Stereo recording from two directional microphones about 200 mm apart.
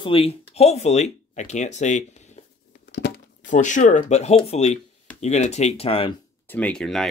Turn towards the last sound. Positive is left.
turn(degrees=0)  # may be behind; listen again after turning